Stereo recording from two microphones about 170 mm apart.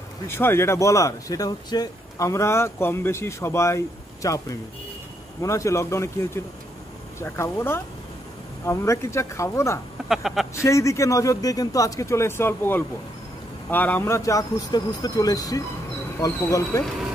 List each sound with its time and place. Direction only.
0.3 s speech: 15° left (ahead or behind)
10.0 s speech: centre (ahead or behind)
10.5 s a man's voice: 15° left (ahead or behind)